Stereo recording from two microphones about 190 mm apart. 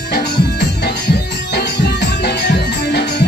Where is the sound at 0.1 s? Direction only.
55° left (ahead or behind).